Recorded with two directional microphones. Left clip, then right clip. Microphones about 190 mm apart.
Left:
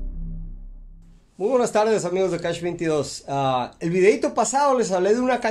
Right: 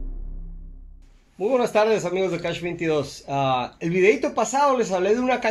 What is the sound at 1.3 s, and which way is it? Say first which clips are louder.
Speech: even; 10° left (ahead or behind).